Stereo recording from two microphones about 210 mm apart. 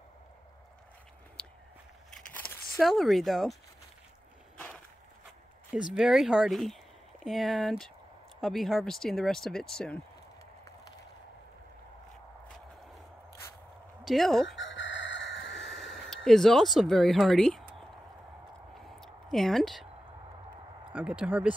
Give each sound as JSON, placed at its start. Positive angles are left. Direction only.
{"t": 1.4, "sound": "walk", "side_deg": 5}
{"t": 2.0, "sound": "a sound", "side_deg": 5}
{"t": 5.7, "sound": "speech", "side_deg": -5}
{"t": 14.0, "sound": "speech", "side_deg": 0}
{"t": 14.6, "sound": "chicken", "side_deg": 60}
{"t": 15.7, "sound": "a sound", "side_deg": 0}
{"t": 16.3, "sound": "speech", "side_deg": 0}
{"t": 18.8, "sound": "a sound", "side_deg": 0}
{"t": 20.9, "sound": "speech", "side_deg": -5}